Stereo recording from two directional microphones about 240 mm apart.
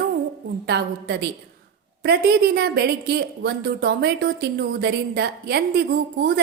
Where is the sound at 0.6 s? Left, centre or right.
Right.